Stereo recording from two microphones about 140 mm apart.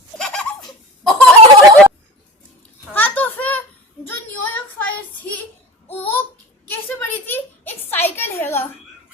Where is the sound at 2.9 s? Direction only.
15° left (ahead or behind).